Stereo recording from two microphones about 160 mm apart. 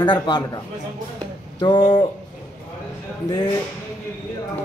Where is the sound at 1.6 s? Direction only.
30° left (ahead or behind).